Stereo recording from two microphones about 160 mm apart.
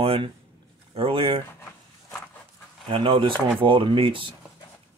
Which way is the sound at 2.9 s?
35° right (ahead or behind).